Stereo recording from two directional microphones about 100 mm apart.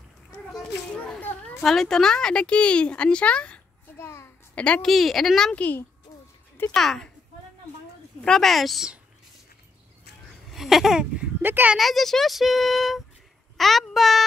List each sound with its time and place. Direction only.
0.6 s a sound: 15° left (ahead or behind)
1.6 s a woman's voice: 5° left (ahead or behind)
4.0 s a sound: 25° left (ahead or behind)
4.6 s a woman's voice: 10° left (ahead or behind)
4.8 s speech: centre (ahead or behind)
5.6 s a woman's voice: 15° left (ahead or behind)
6.7 s speech: 5° left (ahead or behind)
8.2 s speech: 5° left (ahead or behind)
10.5 s a sound: centre (ahead or behind)
11.4 s speech: 20° right (ahead or behind)
11.7 s speech: centre (ahead or behind)